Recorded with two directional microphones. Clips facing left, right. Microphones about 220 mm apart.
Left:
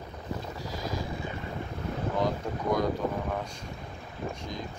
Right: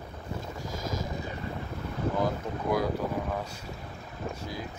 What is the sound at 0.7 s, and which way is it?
Vehicle, 45° right (ahead or behind).